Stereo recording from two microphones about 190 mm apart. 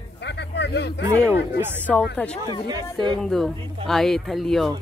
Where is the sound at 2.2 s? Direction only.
10° left (ahead or behind).